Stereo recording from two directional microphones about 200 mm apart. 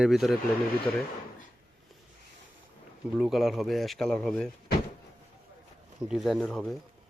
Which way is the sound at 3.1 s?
Centre (ahead or behind).